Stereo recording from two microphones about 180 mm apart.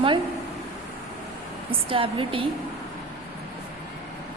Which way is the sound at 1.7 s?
30° right (ahead or behind).